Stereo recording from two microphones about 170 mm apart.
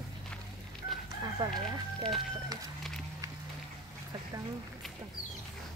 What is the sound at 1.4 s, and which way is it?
Speech, 25° right (ahead or behind).